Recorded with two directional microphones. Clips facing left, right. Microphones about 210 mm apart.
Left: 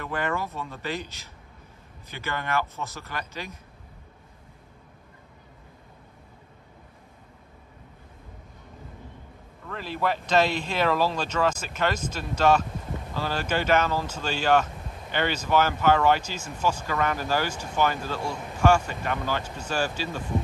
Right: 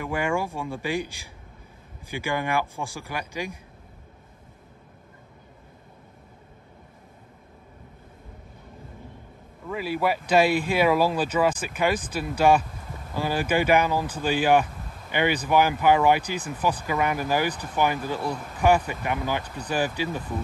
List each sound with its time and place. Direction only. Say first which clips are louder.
0.0 s speech: right 3 dB; 10° right (ahead or behind)
9.7 s speech: right 3 dB; 10° right (ahead or behind)